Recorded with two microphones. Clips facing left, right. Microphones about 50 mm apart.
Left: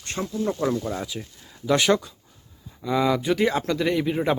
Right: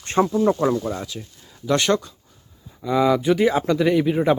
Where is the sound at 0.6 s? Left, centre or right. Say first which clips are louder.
Right 4 dB; centre.